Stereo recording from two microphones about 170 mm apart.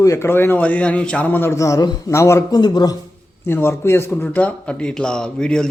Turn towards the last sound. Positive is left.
turn(degrees=5)  # may be behind; listen again after turning